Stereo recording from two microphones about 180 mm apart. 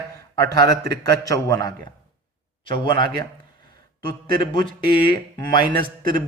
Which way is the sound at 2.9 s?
25° left (ahead or behind).